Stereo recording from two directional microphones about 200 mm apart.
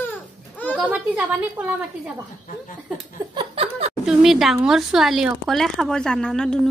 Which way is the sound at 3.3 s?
25° right (ahead or behind).